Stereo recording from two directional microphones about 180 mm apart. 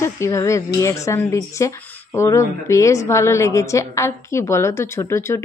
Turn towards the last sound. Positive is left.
turn(degrees=15)  # may be behind; listen again after turning